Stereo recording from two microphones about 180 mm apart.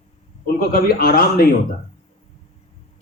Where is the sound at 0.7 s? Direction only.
55° left (ahead or behind).